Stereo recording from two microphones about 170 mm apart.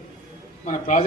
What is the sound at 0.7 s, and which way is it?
Speech, 45° left (ahead or behind).